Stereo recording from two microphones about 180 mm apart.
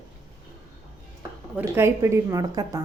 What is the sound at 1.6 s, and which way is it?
A woman's voice, 15° right (ahead or behind).